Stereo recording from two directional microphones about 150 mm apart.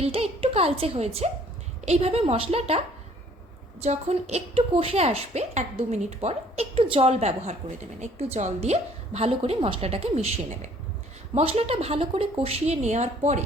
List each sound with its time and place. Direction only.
0.0 s a woman's voice: 40° right (ahead or behind)